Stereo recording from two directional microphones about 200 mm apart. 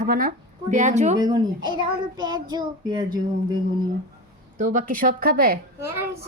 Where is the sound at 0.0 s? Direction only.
45° right (ahead or behind).